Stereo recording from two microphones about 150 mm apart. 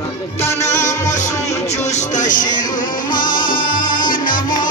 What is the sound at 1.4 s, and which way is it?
Music, 50° left (ahead or behind).